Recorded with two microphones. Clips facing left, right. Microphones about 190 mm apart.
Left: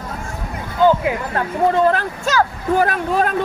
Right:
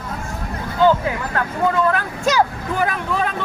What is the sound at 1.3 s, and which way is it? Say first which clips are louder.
Speech: left 2 dB; 30° left (ahead or behind).